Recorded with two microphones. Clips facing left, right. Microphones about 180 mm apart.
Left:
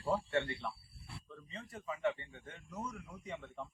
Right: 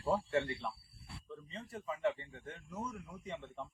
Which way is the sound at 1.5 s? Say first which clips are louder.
Right 1 dB; 25° right (ahead or behind).